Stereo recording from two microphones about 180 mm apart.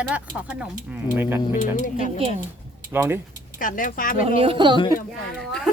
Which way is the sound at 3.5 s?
50° left (ahead or behind).